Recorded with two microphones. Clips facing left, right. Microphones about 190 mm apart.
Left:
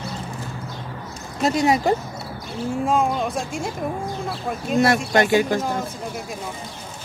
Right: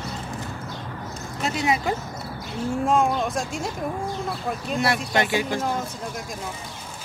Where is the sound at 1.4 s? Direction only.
40° left (ahead or behind).